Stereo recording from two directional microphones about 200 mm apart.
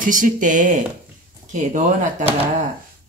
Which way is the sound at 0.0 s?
40° right (ahead or behind).